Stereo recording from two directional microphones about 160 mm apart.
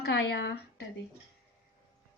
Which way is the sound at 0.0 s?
90° left.